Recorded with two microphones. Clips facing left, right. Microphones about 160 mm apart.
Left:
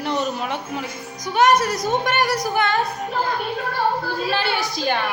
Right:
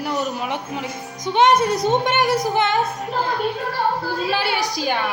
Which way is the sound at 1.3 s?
25° right (ahead or behind).